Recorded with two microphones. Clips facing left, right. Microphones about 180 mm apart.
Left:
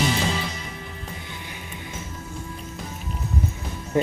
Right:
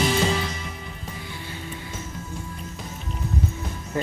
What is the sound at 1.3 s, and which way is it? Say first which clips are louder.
Music: right 2 dB; 15° left (ahead or behind).